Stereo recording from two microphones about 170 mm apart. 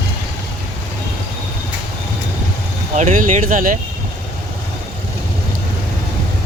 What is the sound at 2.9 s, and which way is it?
Speech, 50° right (ahead or behind).